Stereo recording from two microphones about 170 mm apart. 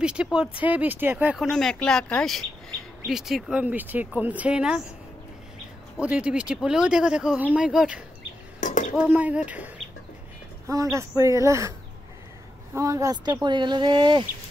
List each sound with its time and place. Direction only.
0.0 s speech: 5° right (ahead or behind)
5.9 s speech: 10° right (ahead or behind)
8.5 s bird: 45° left (ahead or behind)
9.1 s speech: 10° right (ahead or behind)
10.7 s speech: 20° right (ahead or behind)
12.7 s speech: 20° right (ahead or behind)